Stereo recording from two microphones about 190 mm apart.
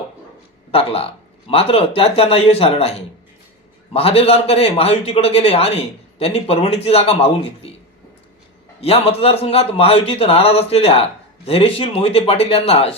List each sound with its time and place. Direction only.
0.7 s a man's voice: 30° left (ahead or behind)
3.9 s a man's voice: 30° left (ahead or behind)
8.8 s a man's voice: 30° left (ahead or behind)